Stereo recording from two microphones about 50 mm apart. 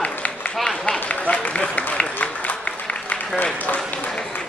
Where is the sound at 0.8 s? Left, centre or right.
Left.